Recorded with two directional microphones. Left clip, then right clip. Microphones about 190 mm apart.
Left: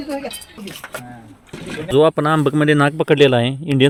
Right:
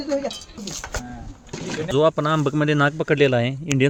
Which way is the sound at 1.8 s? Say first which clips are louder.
Left 5 dB; 30° left (ahead or behind).